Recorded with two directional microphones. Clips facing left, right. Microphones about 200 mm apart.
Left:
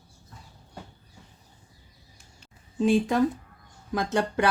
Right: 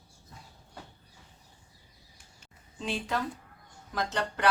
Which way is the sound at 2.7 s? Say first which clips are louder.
Left 11 dB; 50° left (ahead or behind).